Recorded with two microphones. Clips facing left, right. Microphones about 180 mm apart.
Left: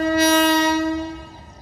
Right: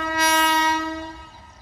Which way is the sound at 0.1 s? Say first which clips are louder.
Left 5 dB; 30° left (ahead or behind).